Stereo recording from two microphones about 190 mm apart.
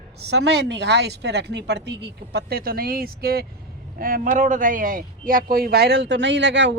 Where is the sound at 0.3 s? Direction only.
65° right (ahead or behind).